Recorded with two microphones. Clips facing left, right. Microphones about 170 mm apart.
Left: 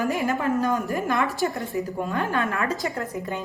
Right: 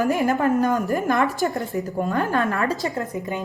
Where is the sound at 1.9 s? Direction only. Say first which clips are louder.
Right 5 dB; 40° right (ahead or behind).